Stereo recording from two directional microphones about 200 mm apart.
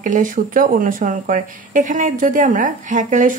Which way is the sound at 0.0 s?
40° right (ahead or behind).